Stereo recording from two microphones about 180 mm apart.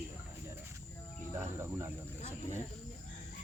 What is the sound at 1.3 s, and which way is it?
Cricket, 15° right (ahead or behind).